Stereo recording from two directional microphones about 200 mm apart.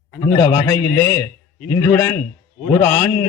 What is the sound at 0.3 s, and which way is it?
A man's voice, 20° left (ahead or behind).